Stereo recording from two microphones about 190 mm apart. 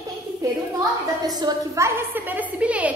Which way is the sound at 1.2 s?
20° right (ahead or behind).